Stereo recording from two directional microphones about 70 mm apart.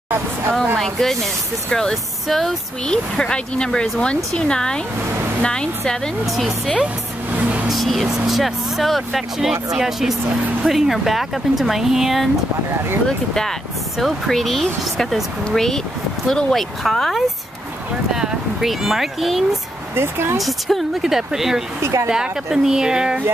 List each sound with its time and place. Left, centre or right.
0.7 s speech: centre
7.2 s a sound: right
7.6 s speech: centre
13.3 s speech: centre
20.0 s speech: right
20.3 s speech: centre